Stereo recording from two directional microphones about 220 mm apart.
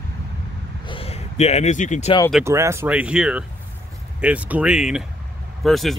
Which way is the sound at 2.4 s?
10° right (ahead or behind).